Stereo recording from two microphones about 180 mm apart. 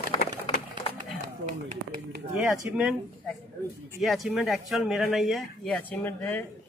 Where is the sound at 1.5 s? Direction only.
45° right (ahead or behind).